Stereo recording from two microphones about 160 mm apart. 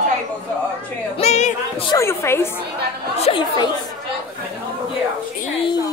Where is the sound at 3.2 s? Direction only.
30° left (ahead or behind).